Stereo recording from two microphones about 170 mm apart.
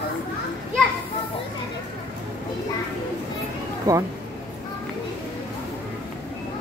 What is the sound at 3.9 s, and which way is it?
Speech, 20° right (ahead or behind).